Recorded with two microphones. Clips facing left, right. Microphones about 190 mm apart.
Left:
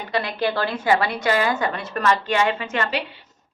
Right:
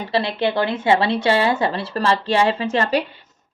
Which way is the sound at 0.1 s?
25° right (ahead or behind).